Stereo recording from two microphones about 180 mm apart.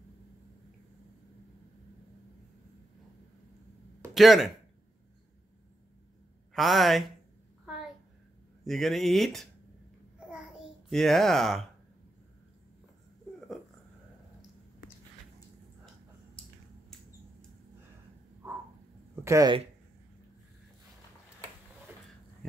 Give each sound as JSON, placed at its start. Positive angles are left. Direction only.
{"t": 4.1, "sound": "speech", "side_deg": 0}
{"t": 6.5, "sound": "speech", "side_deg": 0}
{"t": 8.6, "sound": "speech", "side_deg": 0}
{"t": 10.3, "sound": "babbling", "side_deg": 0}
{"t": 19.2, "sound": "speech", "side_deg": -15}